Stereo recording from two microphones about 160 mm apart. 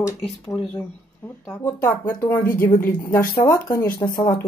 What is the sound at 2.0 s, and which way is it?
Speech, 15° left (ahead or behind).